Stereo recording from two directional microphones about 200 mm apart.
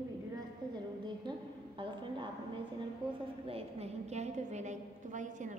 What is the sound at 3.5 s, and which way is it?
A woman's voice, 30° right (ahead or behind).